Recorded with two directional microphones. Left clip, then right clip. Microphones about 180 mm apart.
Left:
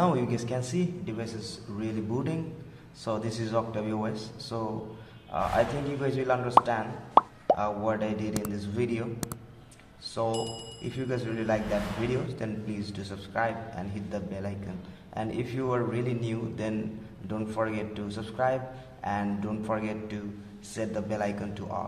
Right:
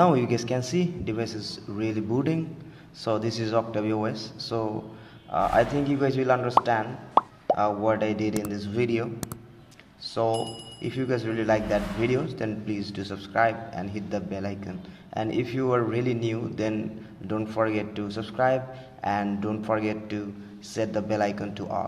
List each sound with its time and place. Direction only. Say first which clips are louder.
0.0 s a man's voice: right 6 dB; 35° right (ahead or behind)
7.2 s plop: left 1 dB; centre (ahead or behind)
7.5 s a man's voice: right 8 dB; 30° right (ahead or behind)
10.3 s speech: right 3 dB; centre (ahead or behind)
10.8 s a man's voice: right 6 dB; 35° right (ahead or behind)